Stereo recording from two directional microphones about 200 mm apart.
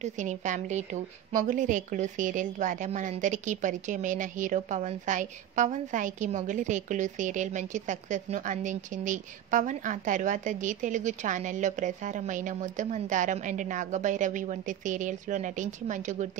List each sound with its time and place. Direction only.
0.0 s a woman's voice: 35° right (ahead or behind)